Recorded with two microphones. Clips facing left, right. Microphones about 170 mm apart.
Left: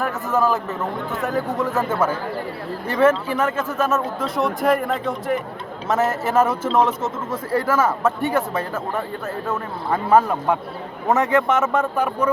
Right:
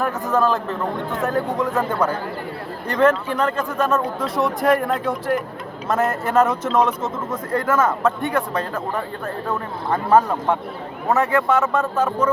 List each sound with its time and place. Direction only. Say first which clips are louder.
0.0 s a man's voice: right 1 dB; 5° left (ahead or behind)
6.7 s speech: even; 25° left (ahead or behind)
7.5 s speech: even; 10° left (ahead or behind)
11.1 s speech: even; 20° left (ahead or behind)